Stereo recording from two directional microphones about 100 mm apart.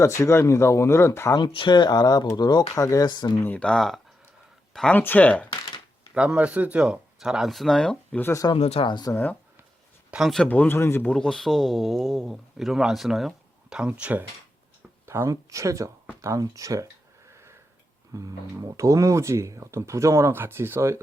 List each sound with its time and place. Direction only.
0.0 s speech: 30° left (ahead or behind)
1.4 s speech: 50° left (ahead or behind)
3.4 s speech: 15° left (ahead or behind)
4.9 s speech: 15° left (ahead or behind)
6.1 s speech: 10° right (ahead or behind); by 8.2 s 10° left (ahead or behind)
8.2 s speech: 30° left (ahead or behind)
8.5 s speech: 90° left
8.9 s speech: 45° left (ahead or behind)
10.1 s speech: centre (ahead or behind)
10.5 s speech: 20° left (ahead or behind)
11.0 s speech: 10° left (ahead or behind); by 16.9 s 35° right (ahead or behind)
18.1 s speech: 35° right (ahead or behind)